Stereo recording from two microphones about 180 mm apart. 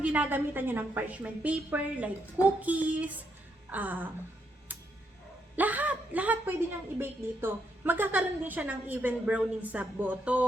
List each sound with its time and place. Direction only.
0.0 s a woman's voice: 10° right (ahead or behind)
5.5 s a woman's voice: 10° right (ahead or behind)